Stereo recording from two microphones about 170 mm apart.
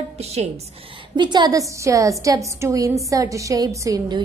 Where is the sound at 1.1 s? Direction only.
25° right (ahead or behind).